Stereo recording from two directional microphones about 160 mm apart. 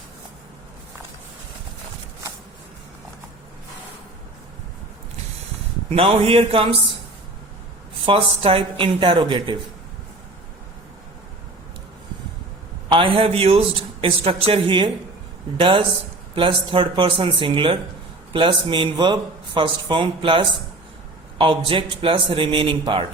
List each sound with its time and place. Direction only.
5.9 s speech: 40° right (ahead or behind)
8.0 s speech: 35° right (ahead or behind)
12.9 s speech: 35° right (ahead or behind)